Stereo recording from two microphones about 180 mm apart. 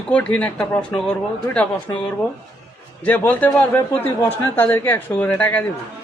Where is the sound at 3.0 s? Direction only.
10° left (ahead or behind).